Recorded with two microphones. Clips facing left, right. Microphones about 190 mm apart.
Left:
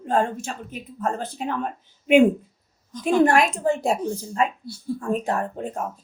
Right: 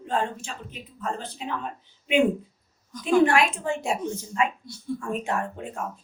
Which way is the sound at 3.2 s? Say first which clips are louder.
Left 3 dB; 40° left (ahead or behind).